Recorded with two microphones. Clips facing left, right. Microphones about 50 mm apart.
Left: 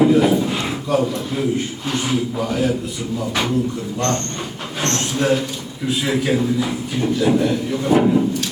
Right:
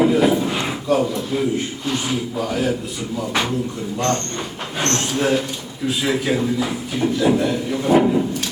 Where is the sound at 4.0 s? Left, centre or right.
Centre.